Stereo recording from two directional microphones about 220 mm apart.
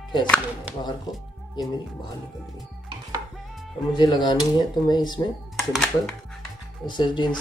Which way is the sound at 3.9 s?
20° left (ahead or behind).